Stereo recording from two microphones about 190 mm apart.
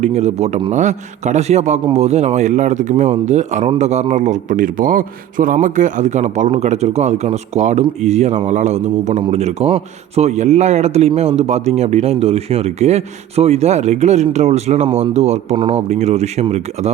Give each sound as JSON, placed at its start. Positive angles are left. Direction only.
{"t": 0.0, "sound": "a man's voice", "side_deg": -35}